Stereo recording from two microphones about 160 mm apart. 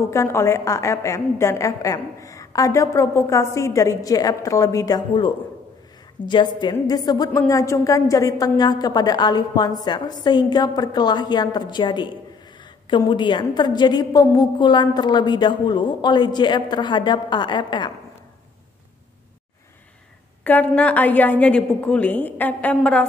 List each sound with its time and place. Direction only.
0.1 s a woman's voice: 15° left (ahead or behind)
20.4 s a woman's voice: 10° left (ahead or behind)